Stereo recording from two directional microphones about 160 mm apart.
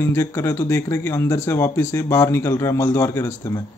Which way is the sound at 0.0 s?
15° left (ahead or behind).